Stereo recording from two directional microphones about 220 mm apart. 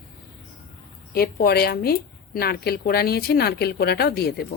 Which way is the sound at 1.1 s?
45° left (ahead or behind).